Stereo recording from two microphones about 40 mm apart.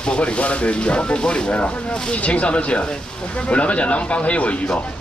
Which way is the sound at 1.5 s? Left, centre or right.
Left.